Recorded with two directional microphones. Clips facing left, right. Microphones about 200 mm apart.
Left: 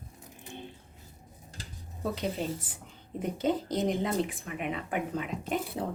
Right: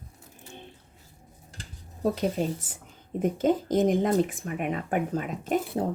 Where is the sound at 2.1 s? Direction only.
45° right (ahead or behind).